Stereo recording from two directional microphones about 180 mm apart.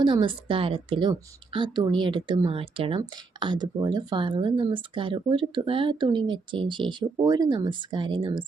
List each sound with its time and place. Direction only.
0.0 s speech: 25° right (ahead or behind)